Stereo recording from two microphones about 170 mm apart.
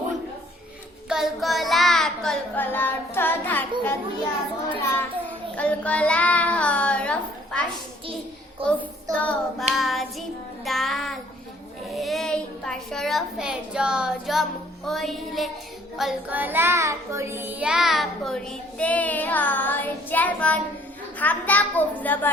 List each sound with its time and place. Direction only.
1.1 s child singing: centre (ahead or behind)
5.5 s a child's voice: 10° left (ahead or behind)
8.6 s child singing: 30° right (ahead or behind)
9.1 s a child's voice: 10° left (ahead or behind)
9.7 s child singing: centre (ahead or behind)
11.9 s a child's voice: centre (ahead or behind)
14.8 s child singing: centre (ahead or behind)
21.2 s a child's voice: 10° left (ahead or behind)